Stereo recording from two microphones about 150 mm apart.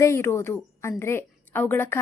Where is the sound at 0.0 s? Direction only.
20° left (ahead or behind).